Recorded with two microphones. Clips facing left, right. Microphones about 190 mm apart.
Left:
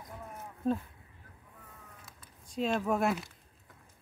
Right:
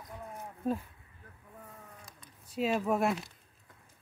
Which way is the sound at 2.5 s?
5° right (ahead or behind).